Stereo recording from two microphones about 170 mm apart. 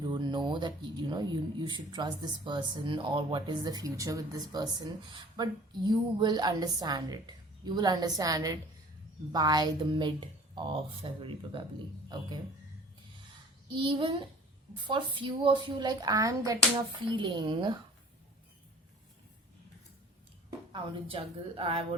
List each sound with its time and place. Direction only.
0.0 s speech: 25° right (ahead or behind)
13.7 s speech: 30° right (ahead or behind)
20.5 s speech: 30° right (ahead or behind)